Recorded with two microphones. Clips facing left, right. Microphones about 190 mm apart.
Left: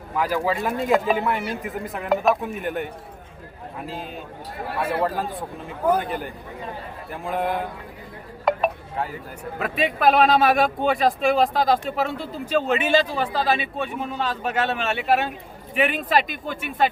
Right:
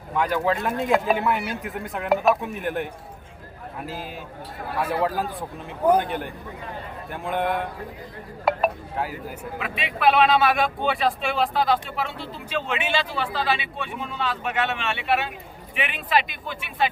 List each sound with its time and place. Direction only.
0.2 s speech: centre (ahead or behind)
8.4 s a sound: 5° right (ahead or behind)
9.6 s a man's voice: 45° left (ahead or behind)